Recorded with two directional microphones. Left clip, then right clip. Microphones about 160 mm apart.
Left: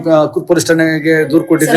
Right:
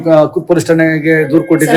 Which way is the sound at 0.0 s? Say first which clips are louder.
Right 2 dB; 20° right (ahead or behind).